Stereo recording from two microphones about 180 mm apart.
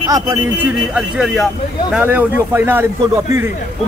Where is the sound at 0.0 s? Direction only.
20° right (ahead or behind).